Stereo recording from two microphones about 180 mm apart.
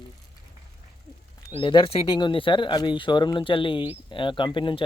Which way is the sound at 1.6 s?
30° left (ahead or behind).